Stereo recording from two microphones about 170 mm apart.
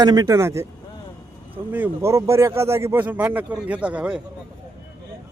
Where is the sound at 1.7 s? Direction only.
15° right (ahead or behind).